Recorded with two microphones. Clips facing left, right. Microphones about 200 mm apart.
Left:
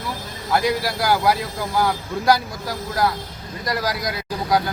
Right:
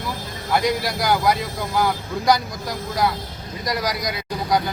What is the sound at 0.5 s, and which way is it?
Speech, centre (ahead or behind).